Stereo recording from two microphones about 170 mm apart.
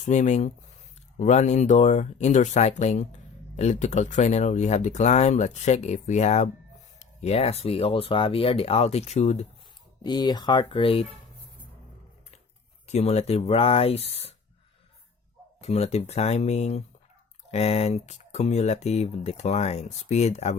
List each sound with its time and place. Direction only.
0.0 s speech: 45° left (ahead or behind)
10.0 s speech: 25° left (ahead or behind)
12.9 s speech: 40° left (ahead or behind)
15.6 s speech: 40° left (ahead or behind)